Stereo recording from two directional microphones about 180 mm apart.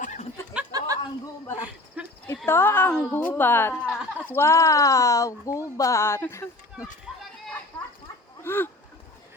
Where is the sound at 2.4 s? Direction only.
15° left (ahead or behind).